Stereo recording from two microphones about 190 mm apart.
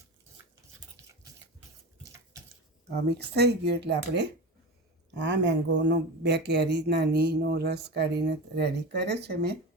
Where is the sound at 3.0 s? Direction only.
60° right (ahead or behind).